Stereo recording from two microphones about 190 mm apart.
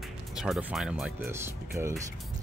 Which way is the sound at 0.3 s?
5° right (ahead or behind).